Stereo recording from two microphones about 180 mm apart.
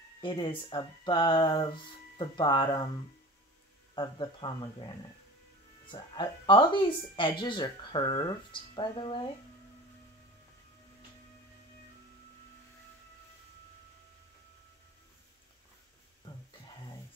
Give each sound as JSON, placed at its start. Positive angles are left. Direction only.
{"t": 0.2, "sound": "speech", "side_deg": 25}
{"t": 3.9, "sound": "speech", "side_deg": 25}